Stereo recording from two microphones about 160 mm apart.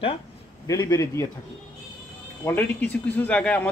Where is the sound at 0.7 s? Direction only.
20° left (ahead or behind).